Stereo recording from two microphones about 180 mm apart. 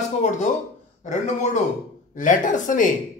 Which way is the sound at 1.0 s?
40° left (ahead or behind).